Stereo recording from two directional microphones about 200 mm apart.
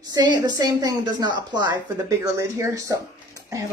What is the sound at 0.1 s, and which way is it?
A woman's voice, 20° right (ahead or behind).